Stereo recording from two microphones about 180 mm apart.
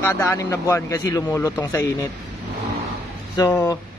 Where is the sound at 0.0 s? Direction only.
15° left (ahead or behind).